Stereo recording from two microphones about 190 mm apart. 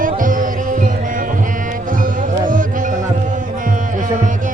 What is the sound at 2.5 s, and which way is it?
Music, 45° right (ahead or behind).